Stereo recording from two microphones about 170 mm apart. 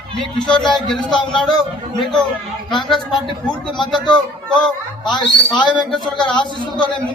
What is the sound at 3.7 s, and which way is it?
Speech, 25° left (ahead or behind).